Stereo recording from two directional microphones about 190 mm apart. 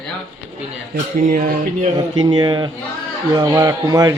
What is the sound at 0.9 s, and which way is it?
Speech, 45° right (ahead or behind).